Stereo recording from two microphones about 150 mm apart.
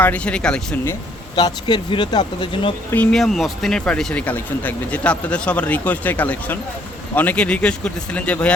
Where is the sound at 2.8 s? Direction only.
10° left (ahead or behind).